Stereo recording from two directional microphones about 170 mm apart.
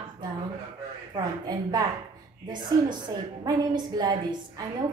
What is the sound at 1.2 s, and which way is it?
A woman's voice, 25° right (ahead or behind).